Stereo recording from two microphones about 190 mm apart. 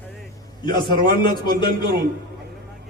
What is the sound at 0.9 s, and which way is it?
Speech, 55° right (ahead or behind).